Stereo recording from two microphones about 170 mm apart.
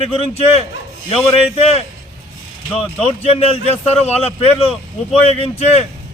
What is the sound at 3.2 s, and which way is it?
A man's voice, 35° left (ahead or behind).